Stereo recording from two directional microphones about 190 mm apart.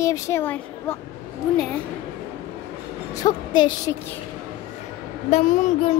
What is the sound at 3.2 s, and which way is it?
Speech, 20° left (ahead or behind).